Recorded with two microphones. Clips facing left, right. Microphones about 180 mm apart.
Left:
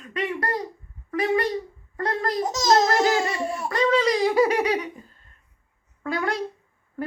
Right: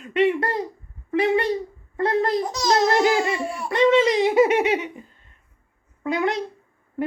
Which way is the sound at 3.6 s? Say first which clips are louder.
Right 4 dB; 25° right (ahead or behind).